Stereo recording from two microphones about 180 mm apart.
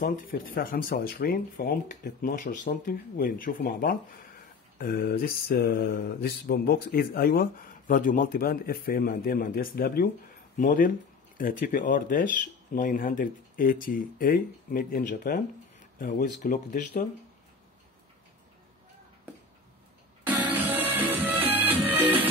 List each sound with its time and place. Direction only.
0.0 s speech: 50° left (ahead or behind)
4.7 s mantra: 60° left (ahead or behind)
10.6 s speech: 45° left (ahead or behind)
20.2 s music: 10° right (ahead or behind)